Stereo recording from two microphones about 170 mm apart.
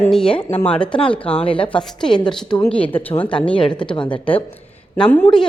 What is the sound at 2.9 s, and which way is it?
Speech, 10° left (ahead or behind).